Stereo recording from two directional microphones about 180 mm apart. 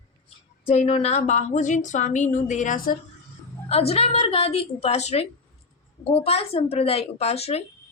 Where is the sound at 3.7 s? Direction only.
35° left (ahead or behind).